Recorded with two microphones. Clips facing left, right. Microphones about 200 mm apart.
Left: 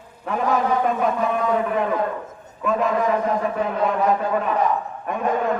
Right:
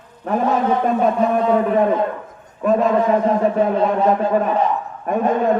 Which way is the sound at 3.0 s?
30° right (ahead or behind).